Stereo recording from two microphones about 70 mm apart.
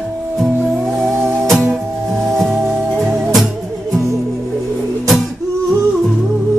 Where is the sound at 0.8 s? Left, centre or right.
Centre.